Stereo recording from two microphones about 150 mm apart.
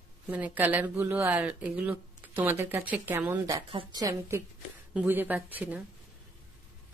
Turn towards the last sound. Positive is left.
turn(degrees=-10)  # may be behind; listen again after turning